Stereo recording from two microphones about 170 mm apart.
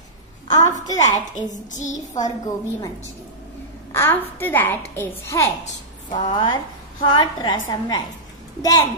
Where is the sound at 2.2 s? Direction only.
20° left (ahead or behind).